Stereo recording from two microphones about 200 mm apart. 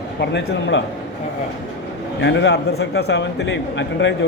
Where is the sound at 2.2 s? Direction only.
60° left (ahead or behind).